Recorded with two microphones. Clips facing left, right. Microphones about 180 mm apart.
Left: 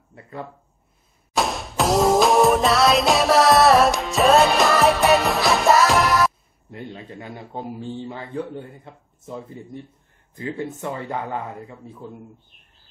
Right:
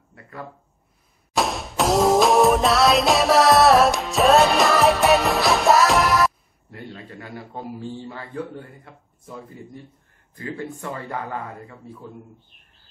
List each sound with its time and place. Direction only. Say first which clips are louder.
0.1 s a sound: left 3 dB; 25° left (ahead or behind)
1.3 s music: even; centre (ahead or behind)
6.7 s a man's voice: left 2 dB; 20° left (ahead or behind)